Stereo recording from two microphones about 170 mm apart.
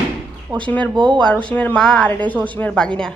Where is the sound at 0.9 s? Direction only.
25° right (ahead or behind).